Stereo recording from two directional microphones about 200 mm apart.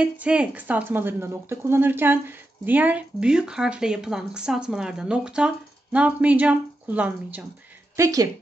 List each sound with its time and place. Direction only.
0.0 s a woman's voice: 5° right (ahead or behind)